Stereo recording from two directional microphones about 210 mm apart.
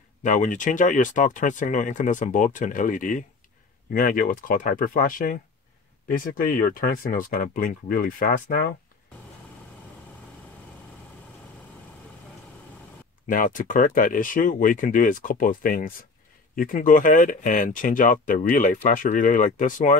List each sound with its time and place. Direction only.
0.2 s speech: 35° left (ahead or behind)
13.3 s speech: 40° left (ahead or behind)